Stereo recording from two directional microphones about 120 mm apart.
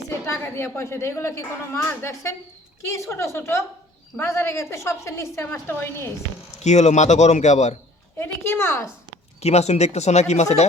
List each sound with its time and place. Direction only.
0.1 s a woman's voice: 20° left (ahead or behind)
6.5 s speech: 70° left (ahead or behind)
8.2 s speech: 20° left (ahead or behind)
9.4 s speech: 65° left (ahead or behind)